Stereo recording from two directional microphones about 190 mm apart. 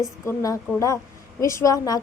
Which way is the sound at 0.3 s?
15° left (ahead or behind).